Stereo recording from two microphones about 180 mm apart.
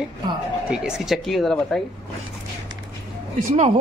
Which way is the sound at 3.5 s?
40° right (ahead or behind).